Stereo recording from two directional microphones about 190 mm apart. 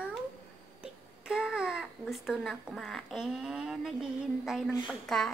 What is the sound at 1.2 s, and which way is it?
Babbling, 5° right (ahead or behind).